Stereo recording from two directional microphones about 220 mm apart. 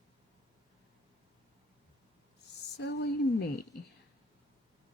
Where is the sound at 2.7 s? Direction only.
50° left (ahead or behind).